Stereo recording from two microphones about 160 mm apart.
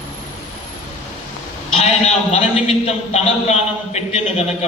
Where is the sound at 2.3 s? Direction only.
40° left (ahead or behind).